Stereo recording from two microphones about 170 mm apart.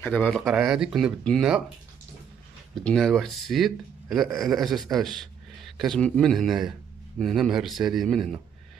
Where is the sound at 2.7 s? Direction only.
5° left (ahead or behind).